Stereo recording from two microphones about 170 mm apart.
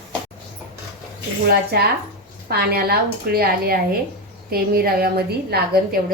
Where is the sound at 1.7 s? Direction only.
70° right (ahead or behind).